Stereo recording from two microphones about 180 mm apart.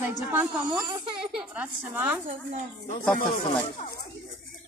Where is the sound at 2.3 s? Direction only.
45° right (ahead or behind).